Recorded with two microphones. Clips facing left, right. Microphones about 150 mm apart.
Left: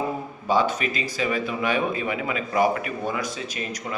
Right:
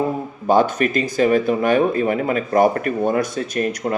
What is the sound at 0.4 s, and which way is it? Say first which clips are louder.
Speech: right 6 dB; 50° right (ahead or behind).